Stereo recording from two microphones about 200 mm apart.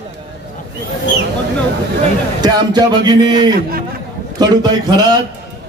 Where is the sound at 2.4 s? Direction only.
20° right (ahead or behind).